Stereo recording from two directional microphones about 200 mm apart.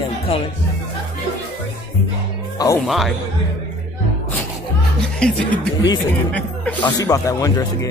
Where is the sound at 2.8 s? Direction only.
Centre (ahead or behind).